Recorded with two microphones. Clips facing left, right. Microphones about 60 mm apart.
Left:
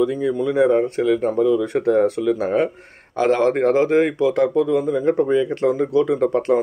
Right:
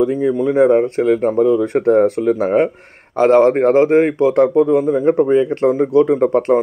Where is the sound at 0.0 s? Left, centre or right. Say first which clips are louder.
Right 4 dB; right.